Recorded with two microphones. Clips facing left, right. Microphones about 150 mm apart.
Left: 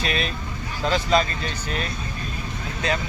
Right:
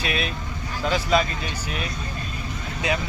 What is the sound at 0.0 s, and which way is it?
Vehicle, 5° right (ahead or behind).